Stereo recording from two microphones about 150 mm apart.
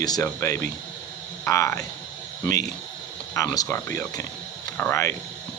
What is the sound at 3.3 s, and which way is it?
Speech, 20° left (ahead or behind).